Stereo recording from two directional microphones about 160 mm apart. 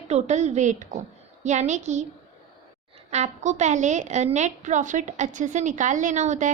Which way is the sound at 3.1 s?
45° right (ahead or behind).